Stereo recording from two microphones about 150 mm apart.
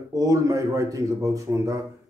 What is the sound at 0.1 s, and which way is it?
Speech, 25° right (ahead or behind).